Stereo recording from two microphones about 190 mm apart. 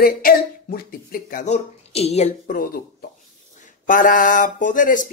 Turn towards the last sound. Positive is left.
turn(degrees=45)  # may be behind; listen again after turning